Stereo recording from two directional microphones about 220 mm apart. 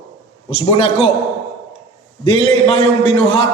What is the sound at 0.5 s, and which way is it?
Speech, 25° left (ahead or behind).